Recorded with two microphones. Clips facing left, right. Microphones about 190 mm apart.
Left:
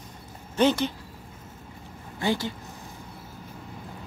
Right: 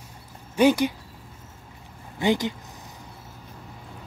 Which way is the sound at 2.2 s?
20° right (ahead or behind).